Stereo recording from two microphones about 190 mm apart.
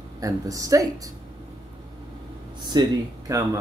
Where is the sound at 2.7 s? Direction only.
20° right (ahead or behind).